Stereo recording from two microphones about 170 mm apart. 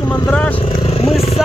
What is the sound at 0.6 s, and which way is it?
Vehicle, 35° left (ahead or behind).